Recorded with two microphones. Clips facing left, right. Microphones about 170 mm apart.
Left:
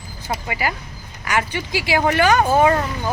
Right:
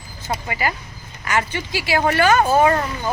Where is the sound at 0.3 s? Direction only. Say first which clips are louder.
Even; 10° left (ahead or behind).